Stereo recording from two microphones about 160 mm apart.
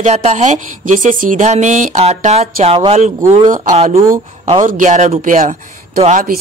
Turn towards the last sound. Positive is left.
turn(degrees=-55)  # may be behind; listen again after turning